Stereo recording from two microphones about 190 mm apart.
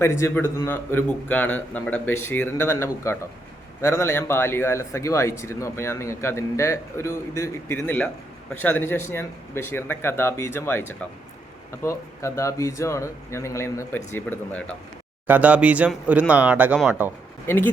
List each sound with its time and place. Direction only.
0.0 s a man's voice: 15° left (ahead or behind)
15.3 s speech: 5° right (ahead or behind)
17.4 s speech: 10° left (ahead or behind)